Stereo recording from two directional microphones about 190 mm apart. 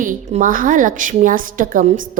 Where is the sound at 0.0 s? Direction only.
40° right (ahead or behind).